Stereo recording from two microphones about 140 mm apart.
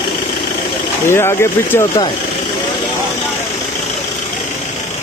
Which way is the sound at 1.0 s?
20° left (ahead or behind).